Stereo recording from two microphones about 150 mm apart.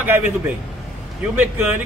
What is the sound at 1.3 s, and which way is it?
Speech, 10° right (ahead or behind).